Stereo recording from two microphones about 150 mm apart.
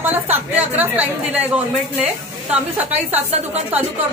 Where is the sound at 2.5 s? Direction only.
10° right (ahead or behind).